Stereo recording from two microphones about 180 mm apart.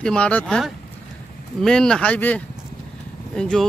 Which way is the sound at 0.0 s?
5° left (ahead or behind).